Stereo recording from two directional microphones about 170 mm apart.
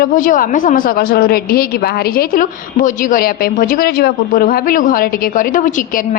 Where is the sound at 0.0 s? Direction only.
55° left (ahead or behind).